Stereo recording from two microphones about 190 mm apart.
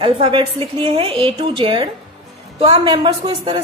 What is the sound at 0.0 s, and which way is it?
A woman's voice, 25° right (ahead or behind).